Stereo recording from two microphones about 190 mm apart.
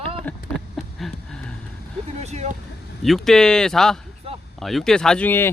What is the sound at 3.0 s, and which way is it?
Speech, centre (ahead or behind).